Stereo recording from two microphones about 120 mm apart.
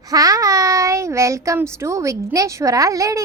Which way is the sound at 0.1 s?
30° right (ahead or behind).